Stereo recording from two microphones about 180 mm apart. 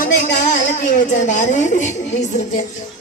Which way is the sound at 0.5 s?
45° left (ahead or behind).